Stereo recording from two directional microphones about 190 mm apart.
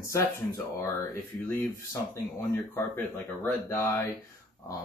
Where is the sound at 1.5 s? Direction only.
10° left (ahead or behind).